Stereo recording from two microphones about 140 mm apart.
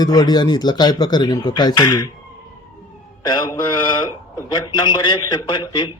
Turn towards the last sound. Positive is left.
turn(degrees=35)  # may be behind; listen again after turning